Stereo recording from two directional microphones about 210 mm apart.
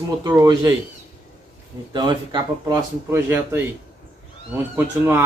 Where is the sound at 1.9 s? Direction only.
20° right (ahead or behind).